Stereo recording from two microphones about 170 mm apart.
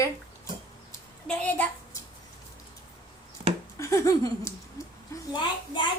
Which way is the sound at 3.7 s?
20° left (ahead or behind).